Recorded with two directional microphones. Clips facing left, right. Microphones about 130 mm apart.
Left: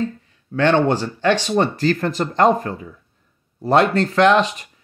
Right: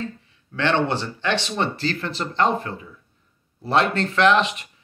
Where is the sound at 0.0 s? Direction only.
40° left (ahead or behind).